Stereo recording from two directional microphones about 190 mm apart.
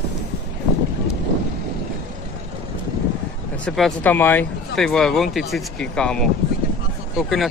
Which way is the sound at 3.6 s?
5° left (ahead or behind).